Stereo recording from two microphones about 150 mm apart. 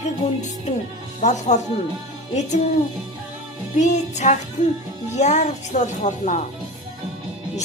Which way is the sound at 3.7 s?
50° left (ahead or behind).